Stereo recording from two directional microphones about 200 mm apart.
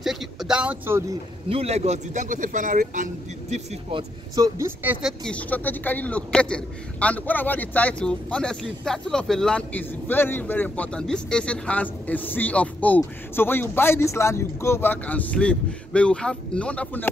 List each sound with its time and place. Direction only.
0.0 s a sound: centre (ahead or behind)
1.5 s speech: 30° right (ahead or behind)
4.4 s speech: 15° right (ahead or behind)
5.2 s a man's voice: 5° left (ahead or behind)